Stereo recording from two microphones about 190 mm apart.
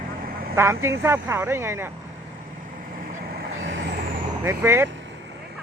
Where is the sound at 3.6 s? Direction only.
80° right.